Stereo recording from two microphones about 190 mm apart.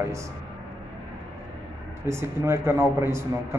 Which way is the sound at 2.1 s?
15° right (ahead or behind).